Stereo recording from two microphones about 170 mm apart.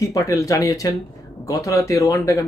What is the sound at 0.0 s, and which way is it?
Speech, 20° left (ahead or behind).